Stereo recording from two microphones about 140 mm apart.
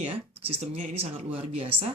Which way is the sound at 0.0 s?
45° right (ahead or behind).